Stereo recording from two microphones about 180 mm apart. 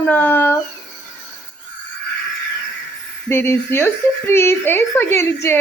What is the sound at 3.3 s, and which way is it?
A woman's voice, 15° left (ahead or behind).